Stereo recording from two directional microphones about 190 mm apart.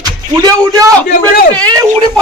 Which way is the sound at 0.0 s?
20° right (ahead or behind).